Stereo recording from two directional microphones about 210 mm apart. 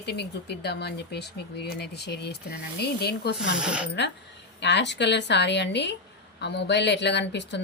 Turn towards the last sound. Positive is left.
turn(degrees=55)  # may be behind; listen again after turning